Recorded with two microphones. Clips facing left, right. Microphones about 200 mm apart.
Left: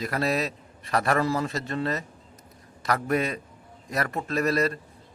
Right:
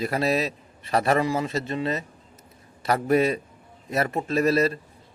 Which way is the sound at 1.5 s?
25° right (ahead or behind).